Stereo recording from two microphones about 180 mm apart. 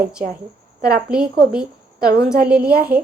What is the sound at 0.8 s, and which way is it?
Speech, 55° right (ahead or behind).